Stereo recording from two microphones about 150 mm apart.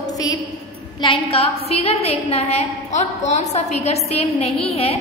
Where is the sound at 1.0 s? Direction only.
40° left (ahead or behind).